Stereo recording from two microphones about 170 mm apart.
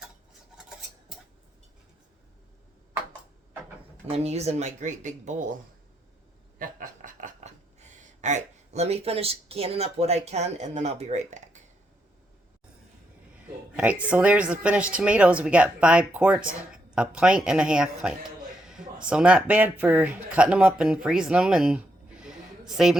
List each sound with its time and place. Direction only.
4.1 s speech: 40° right (ahead or behind)
6.6 s a sound: 50° right (ahead or behind)
13.7 s a woman's voice: 5° right (ahead or behind)